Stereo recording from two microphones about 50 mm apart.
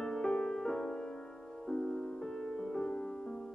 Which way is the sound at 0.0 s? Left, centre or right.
Centre.